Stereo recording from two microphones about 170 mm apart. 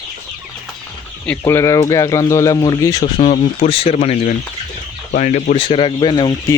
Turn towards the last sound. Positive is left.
turn(degrees=25)  # may be behind; listen again after turning